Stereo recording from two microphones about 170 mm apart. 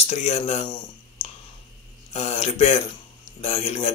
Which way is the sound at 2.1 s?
40° left (ahead or behind).